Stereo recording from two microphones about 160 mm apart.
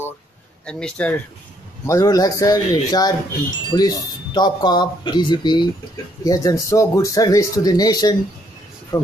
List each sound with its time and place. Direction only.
0.7 s speech: 5° left (ahead or behind)
1.9 s speech: 20° left (ahead or behind)